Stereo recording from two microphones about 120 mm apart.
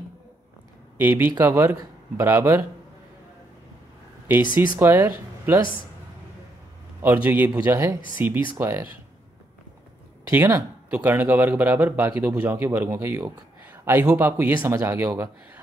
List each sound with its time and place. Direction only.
0.9 s speech: 20° right (ahead or behind)
4.6 s speech: 20° right (ahead or behind)
7.2 s speech: 15° right (ahead or behind)
10.3 s speech: 15° right (ahead or behind)